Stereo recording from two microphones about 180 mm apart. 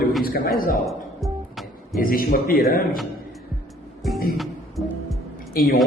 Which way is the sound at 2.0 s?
55° left (ahead or behind).